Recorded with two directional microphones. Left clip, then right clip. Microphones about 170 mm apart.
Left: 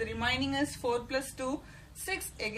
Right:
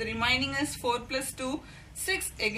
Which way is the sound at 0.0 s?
30° left (ahead or behind).